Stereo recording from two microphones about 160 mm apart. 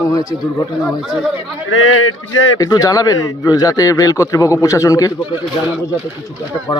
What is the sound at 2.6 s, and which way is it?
A man's voice, 20° left (ahead or behind).